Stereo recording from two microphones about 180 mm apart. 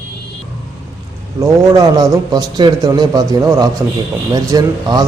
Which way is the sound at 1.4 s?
20° right (ahead or behind).